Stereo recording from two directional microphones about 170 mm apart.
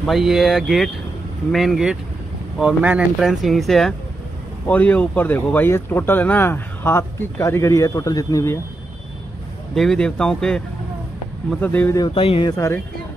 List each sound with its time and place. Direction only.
0.0 s speech: centre (ahead or behind); by 8.5 s 20° left (ahead or behind)
9.8 s speech: 5° left (ahead or behind)
12.0 s speech: 35° left (ahead or behind)
12.4 s speech: 20° left (ahead or behind)